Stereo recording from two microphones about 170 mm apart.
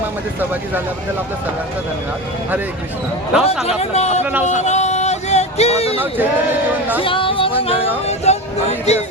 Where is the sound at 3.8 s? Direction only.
40° left (ahead or behind).